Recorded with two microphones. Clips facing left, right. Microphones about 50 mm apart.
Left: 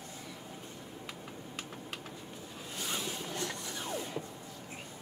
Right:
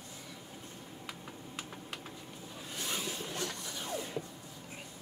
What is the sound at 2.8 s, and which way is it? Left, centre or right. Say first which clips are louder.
Train: left 1 dB; left.